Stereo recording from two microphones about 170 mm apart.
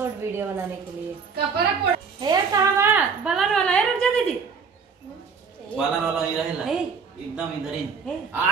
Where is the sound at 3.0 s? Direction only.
5° right (ahead or behind).